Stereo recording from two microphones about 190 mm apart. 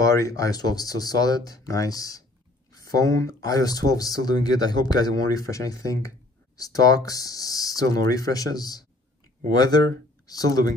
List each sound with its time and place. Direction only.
0.0 s speech: 15° left (ahead or behind)